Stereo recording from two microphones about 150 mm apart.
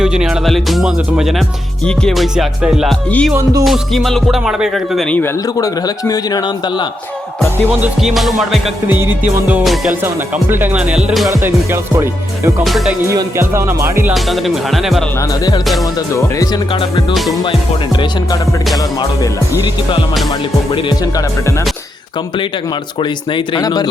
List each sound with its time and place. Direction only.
0.0 s music: 5° right (ahead or behind)
3.1 s music: 10° left (ahead or behind)
5.5 s a man's voice: 25° left (ahead or behind)
7.7 s music: 5° right (ahead or behind)
8.9 s music: 15° right (ahead or behind)
11.3 s music: 20° right (ahead or behind)
12.6 s music: centre (ahead or behind)
13.1 s music: 20° right (ahead or behind)
14.1 s music: centre (ahead or behind)
23.3 s a man's voice: 25° left (ahead or behind)